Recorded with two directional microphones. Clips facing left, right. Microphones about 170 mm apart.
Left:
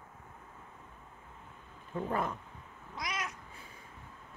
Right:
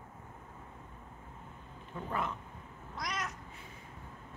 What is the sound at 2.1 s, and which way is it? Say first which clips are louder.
Speech: left 2 dB; 40° left (ahead or behind).